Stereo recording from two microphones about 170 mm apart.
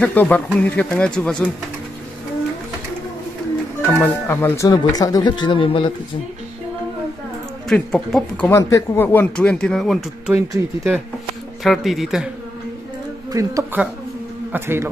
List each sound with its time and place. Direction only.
0.0 s speech: 10° left (ahead or behind)
3.8 s speech: 15° left (ahead or behind); by 5.9 s 30° left (ahead or behind)
7.6 s speech: 5° left (ahead or behind)
8.5 s speech: 15° left (ahead or behind); by 10.3 s centre (ahead or behind)
10.3 s speech: 15° right (ahead or behind)
11.6 s speech: centre (ahead or behind)
13.3 s a man's voice: 20° right (ahead or behind)